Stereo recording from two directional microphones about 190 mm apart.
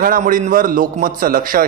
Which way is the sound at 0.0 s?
45° right (ahead or behind).